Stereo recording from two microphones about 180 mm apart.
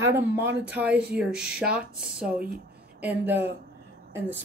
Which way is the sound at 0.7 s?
10° right (ahead or behind).